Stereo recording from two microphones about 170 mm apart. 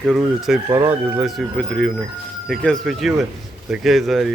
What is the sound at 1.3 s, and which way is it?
Speech, centre (ahead or behind).